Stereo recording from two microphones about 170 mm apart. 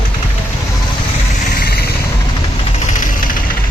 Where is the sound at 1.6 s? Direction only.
65° left (ahead or behind).